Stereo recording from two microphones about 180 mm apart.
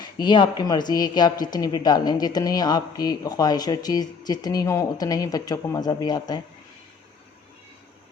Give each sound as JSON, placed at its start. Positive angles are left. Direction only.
{"t": 0.0, "sound": "speech", "side_deg": 25}